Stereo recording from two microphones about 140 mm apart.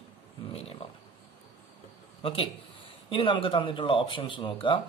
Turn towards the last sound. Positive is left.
turn(degrees=35)  # may be behind; listen again after turning